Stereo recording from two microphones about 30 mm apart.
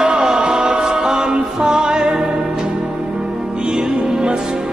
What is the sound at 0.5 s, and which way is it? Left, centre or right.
Music, right.